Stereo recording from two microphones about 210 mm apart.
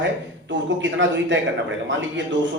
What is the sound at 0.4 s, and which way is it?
Speech, 60° right (ahead or behind).